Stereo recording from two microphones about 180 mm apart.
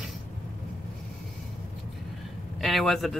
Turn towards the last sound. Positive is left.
turn(degrees=0)  # may be behind; listen again after turning